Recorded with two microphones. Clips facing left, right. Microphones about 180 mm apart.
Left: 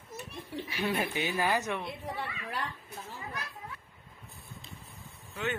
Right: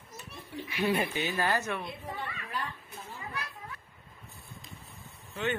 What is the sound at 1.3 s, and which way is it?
Speech, 15° left (ahead or behind).